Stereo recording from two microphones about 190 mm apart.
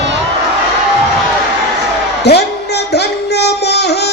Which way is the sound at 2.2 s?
60° left (ahead or behind).